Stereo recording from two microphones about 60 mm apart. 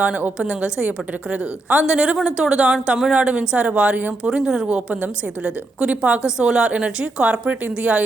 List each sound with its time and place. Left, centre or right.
0.0 s a woman's voice: right
4.3 s a woman's voice: centre